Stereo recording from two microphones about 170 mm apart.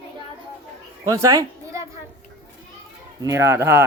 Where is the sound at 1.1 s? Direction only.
20° right (ahead or behind).